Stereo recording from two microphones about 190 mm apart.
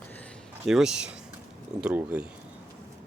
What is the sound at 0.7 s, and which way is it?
Speech, 5° right (ahead or behind).